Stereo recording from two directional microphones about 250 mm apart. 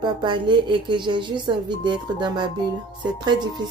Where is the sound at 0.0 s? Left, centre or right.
Centre.